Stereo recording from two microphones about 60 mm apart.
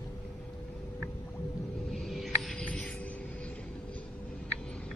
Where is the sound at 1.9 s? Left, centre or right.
Centre.